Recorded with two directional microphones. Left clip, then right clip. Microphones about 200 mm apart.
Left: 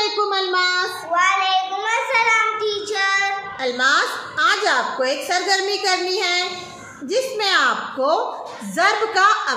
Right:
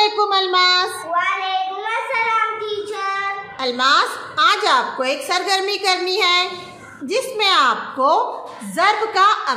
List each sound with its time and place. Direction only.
0.0 s a sound: 15° right (ahead or behind)
1.1 s child singing: centre (ahead or behind)
3.6 s a woman's voice: 20° right (ahead or behind)